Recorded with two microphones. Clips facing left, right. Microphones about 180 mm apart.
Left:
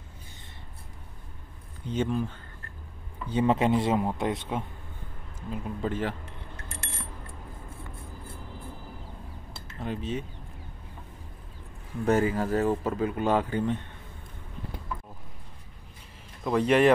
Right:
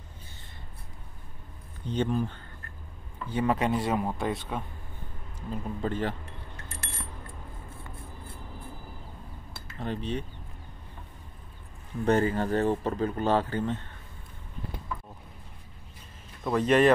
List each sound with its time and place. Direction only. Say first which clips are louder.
2.0 s speech: even; centre (ahead or behind)
3.2 s speech: left 3 dB; 20° left (ahead or behind)
5.5 s speech: even; centre (ahead or behind)
9.8 s speech: even; 5° left (ahead or behind)
12.0 s speech: even; 5° left (ahead or behind)
16.4 s speech: left 1 dB; 10° left (ahead or behind)